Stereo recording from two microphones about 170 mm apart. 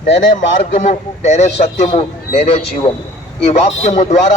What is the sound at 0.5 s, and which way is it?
A man's voice, 50° left (ahead or behind).